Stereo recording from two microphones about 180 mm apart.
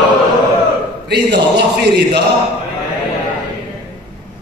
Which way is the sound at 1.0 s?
65° right (ahead or behind).